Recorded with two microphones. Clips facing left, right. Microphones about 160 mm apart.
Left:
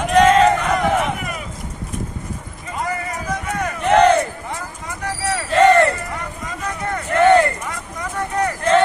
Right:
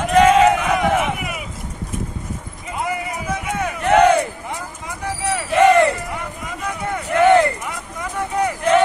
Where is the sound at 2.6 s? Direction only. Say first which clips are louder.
Even; 10° right (ahead or behind).